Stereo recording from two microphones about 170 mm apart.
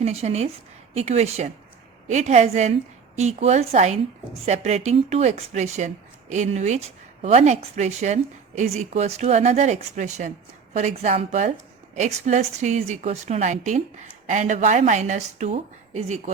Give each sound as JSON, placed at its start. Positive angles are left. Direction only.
{"t": 0.0, "sound": "speech", "side_deg": -40}